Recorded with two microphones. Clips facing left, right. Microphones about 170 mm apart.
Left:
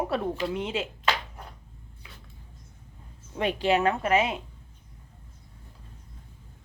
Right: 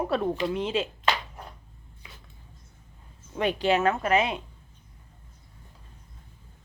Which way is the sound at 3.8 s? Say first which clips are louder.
Even; 35° left (ahead or behind).